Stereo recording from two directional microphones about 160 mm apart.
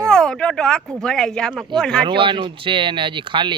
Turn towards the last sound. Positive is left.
turn(degrees=-30)  # may be behind; listen again after turning